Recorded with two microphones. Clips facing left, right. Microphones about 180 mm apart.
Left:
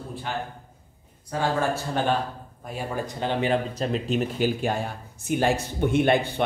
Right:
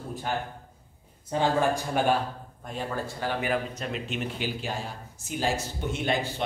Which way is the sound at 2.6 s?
10° left (ahead or behind).